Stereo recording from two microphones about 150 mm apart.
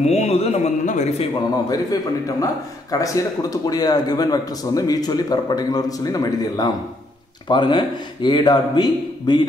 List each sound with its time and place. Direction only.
0.0 s speech: 45° left (ahead or behind)
1.7 s a man's voice: 25° left (ahead or behind)